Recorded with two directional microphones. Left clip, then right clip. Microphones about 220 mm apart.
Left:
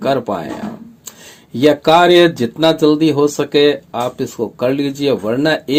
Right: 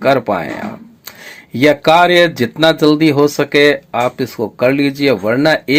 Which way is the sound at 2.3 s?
25° right (ahead or behind).